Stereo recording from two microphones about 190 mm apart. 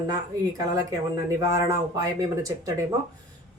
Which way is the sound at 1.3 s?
15° right (ahead or behind).